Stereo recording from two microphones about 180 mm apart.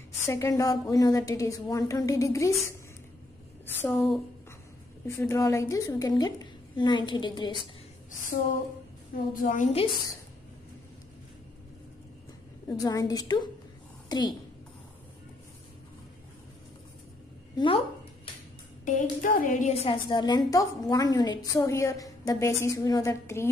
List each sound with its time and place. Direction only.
0.3 s a woman's voice: 15° left (ahead or behind)
3.7 s a woman's voice: 10° left (ahead or behind)
9.3 s a woman's voice: 50° left (ahead or behind)
12.6 s a woman's voice: 20° left (ahead or behind)
17.6 s a sound: 30° left (ahead or behind)
18.9 s a woman's voice: 45° left (ahead or behind); by 23.5 s 15° left (ahead or behind)